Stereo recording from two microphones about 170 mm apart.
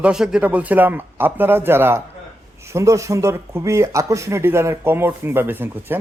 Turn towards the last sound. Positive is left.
turn(degrees=-10)  # may be behind; listen again after turning